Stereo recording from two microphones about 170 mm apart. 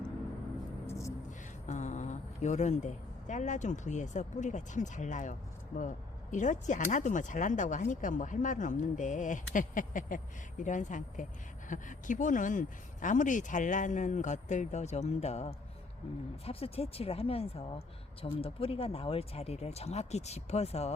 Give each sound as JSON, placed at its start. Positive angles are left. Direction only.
{"t": 0.9, "sound": "music", "side_deg": 15}
{"t": 1.6, "sound": "a woman's voice", "side_deg": 45}